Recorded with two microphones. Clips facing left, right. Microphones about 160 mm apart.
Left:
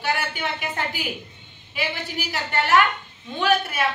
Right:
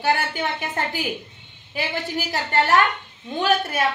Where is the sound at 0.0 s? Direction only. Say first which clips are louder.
Right 4 dB; 40° right (ahead or behind).